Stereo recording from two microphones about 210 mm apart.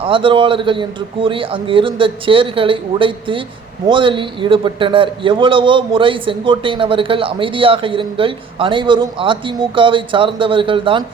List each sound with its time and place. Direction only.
0.0 s a man's voice: 25° right (ahead or behind)